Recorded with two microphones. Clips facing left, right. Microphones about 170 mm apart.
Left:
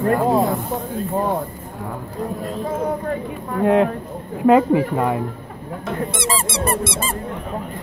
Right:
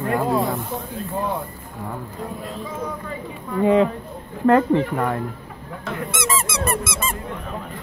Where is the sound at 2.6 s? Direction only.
55° left (ahead or behind).